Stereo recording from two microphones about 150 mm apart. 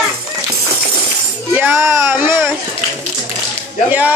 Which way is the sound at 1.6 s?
15° right (ahead or behind).